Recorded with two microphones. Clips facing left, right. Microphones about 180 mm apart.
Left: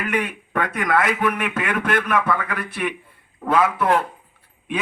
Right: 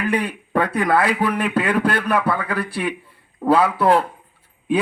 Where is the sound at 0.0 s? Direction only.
35° right (ahead or behind).